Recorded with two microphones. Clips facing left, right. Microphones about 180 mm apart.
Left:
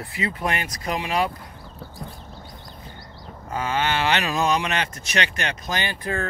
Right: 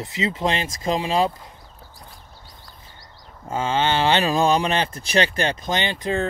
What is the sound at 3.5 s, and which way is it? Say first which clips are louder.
Speech: right 3 dB; 25° right (ahead or behind).